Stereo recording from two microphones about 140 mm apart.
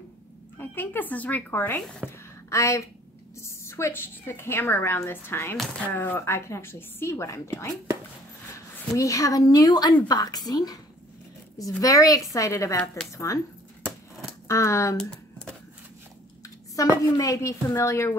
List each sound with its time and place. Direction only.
0.6 s a woman's voice: 15° left (ahead or behind)
8.9 s a woman's voice: 25° left (ahead or behind)
14.5 s a woman's voice: 20° left (ahead or behind)
15.0 s computer keyboard: 5° left (ahead or behind)
16.4 s a woman's voice: 25° left (ahead or behind)